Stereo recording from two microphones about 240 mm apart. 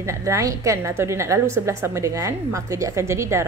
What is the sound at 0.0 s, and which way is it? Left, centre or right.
A woman's voice, centre.